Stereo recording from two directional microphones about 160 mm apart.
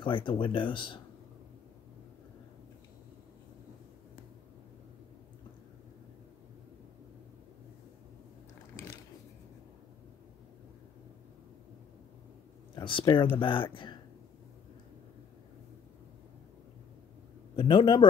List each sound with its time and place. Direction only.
0.0 s speech: 30° left (ahead or behind)
12.7 s speech: 30° left (ahead or behind)
17.6 s a man's voice: 30° left (ahead or behind)